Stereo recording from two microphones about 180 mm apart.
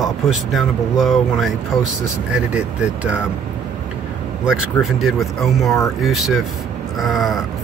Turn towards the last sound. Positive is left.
turn(degrees=0)  # may be behind; listen again after turning